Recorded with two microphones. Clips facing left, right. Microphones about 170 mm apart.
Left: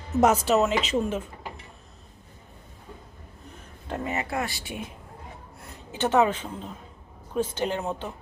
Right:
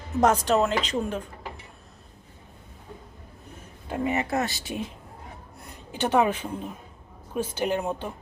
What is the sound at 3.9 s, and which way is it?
Speech, 20° right (ahead or behind).